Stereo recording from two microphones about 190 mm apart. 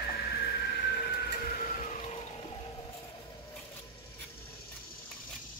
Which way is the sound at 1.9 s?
30° left (ahead or behind).